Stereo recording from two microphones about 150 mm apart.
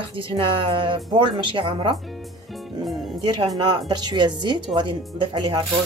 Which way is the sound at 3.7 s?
30° right (ahead or behind).